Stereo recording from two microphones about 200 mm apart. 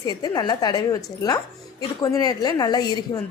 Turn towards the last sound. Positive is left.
turn(degrees=20)  # may be behind; listen again after turning